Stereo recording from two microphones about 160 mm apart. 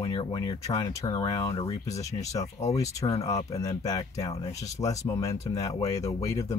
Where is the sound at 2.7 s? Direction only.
20° left (ahead or behind).